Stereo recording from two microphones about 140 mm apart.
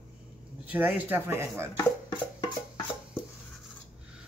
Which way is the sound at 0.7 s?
10° right (ahead or behind).